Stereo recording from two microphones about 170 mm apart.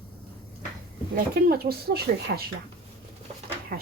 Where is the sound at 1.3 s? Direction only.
65° right (ahead or behind).